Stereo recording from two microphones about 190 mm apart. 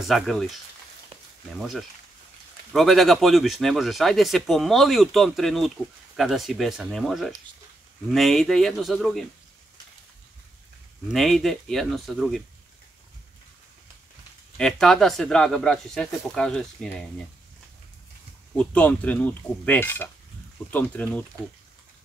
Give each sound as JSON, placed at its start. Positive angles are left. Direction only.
{"t": 0.1, "sound": "speech", "side_deg": 0}
{"t": 2.7, "sound": "speech", "side_deg": 0}
{"t": 11.1, "sound": "speech", "side_deg": 0}
{"t": 14.6, "sound": "speech", "side_deg": 0}
{"t": 18.6, "sound": "speech", "side_deg": 5}